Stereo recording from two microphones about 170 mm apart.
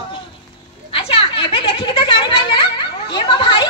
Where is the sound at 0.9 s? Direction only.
30° left (ahead or behind).